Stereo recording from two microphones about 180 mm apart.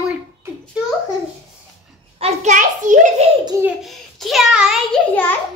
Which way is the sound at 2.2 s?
40° right (ahead or behind).